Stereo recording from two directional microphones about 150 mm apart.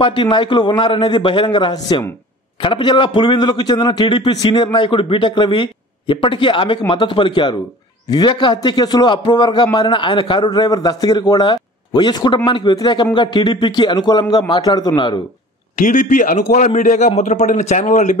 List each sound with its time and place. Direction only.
0.0 s a man's voice: 35° left (ahead or behind)
15.8 s a man's voice: 55° left (ahead or behind)